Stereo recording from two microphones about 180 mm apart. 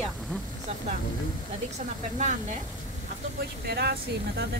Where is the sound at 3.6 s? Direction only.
60° right (ahead or behind).